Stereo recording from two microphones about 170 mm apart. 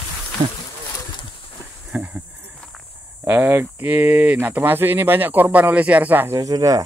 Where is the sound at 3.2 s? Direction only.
10° right (ahead or behind).